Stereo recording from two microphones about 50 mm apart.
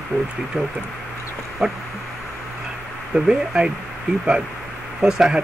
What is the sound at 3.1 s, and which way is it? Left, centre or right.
Speech, centre.